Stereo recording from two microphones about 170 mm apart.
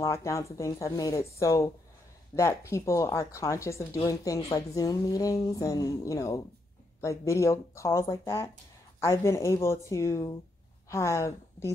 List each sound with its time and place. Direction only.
0.0 s a woman's voice: 15° left (ahead or behind)